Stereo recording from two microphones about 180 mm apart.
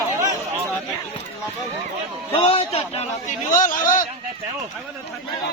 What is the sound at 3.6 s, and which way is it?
Speech, 50° left (ahead or behind).